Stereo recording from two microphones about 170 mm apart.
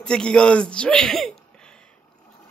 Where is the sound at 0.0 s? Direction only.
5° left (ahead or behind).